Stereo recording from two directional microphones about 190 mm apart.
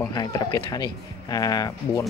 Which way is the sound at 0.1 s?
20° left (ahead or behind).